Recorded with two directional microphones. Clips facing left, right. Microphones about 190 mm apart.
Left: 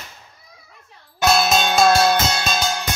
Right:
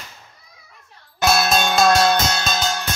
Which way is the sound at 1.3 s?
Centre (ahead or behind).